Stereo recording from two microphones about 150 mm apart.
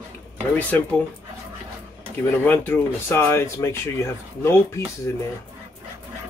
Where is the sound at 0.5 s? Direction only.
10° left (ahead or behind).